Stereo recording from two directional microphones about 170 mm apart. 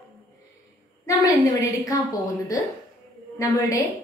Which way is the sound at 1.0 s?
20° left (ahead or behind).